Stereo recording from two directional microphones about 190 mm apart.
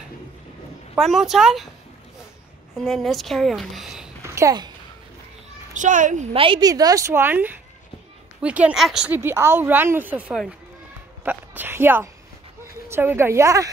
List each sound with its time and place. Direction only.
0.9 s a woman's voice: centre (ahead or behind)
2.8 s a woman's voice: centre (ahead or behind)
4.4 s speech: 20° right (ahead or behind)
5.8 s a woman's voice: 40° right (ahead or behind)
6.3 s a woman's voice: 25° right (ahead or behind)